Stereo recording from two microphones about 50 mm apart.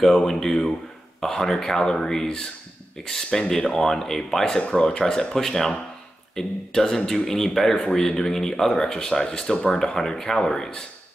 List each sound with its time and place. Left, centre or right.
0.0 s speech: centre